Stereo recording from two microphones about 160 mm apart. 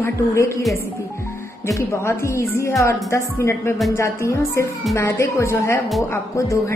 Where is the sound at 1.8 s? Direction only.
20° left (ahead or behind).